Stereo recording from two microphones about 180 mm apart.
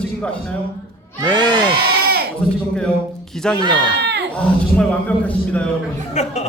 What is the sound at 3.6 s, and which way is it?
Speech, 25° right (ahead or behind).